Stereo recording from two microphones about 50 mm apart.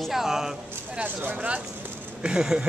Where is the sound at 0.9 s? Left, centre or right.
Right.